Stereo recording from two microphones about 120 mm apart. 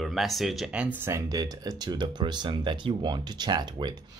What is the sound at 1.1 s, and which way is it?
Speech, 25° right (ahead or behind).